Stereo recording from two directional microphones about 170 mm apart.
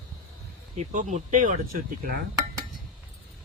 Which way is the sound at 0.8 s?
45° right (ahead or behind).